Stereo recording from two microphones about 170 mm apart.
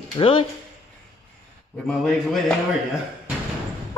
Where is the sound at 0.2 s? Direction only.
30° left (ahead or behind).